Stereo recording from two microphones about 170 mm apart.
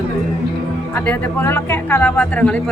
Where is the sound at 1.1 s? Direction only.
10° left (ahead or behind).